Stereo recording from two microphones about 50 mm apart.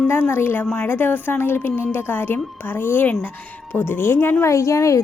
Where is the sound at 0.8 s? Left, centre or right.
Left.